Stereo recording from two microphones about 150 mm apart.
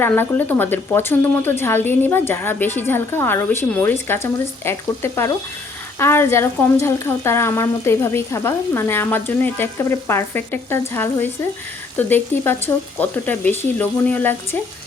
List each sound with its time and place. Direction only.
0.0 s speech: 15° left (ahead or behind)